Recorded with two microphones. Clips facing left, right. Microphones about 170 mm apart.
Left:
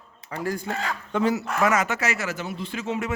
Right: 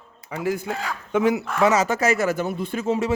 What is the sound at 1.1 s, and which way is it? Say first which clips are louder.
Speech: right 3 dB; 15° right (ahead or behind).